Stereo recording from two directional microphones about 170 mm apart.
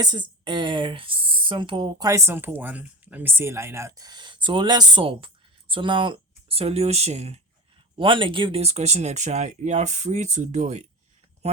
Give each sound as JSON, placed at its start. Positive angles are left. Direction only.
{"t": 0.0, "sound": "speech", "side_deg": -25}